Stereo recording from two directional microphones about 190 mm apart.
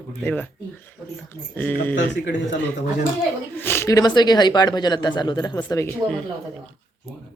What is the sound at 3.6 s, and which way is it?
Speech, 10° left (ahead or behind).